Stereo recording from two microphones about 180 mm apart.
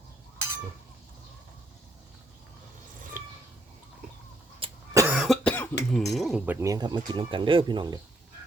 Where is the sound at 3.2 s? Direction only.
50° right (ahead or behind).